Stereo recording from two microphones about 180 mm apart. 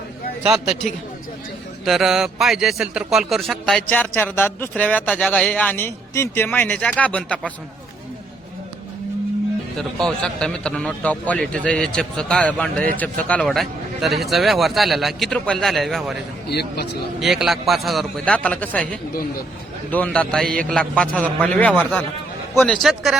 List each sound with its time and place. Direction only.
0.5 s a man's voice: centre (ahead or behind)
9.7 s speech: 5° left (ahead or behind)
16.5 s speech: 65° left (ahead or behind)
17.2 s speech: centre (ahead or behind)
19.9 s a man's voice: 10° left (ahead or behind)